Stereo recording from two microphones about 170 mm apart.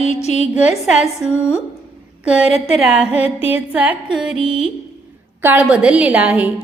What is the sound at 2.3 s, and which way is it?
A woman's voice, 5° right (ahead or behind).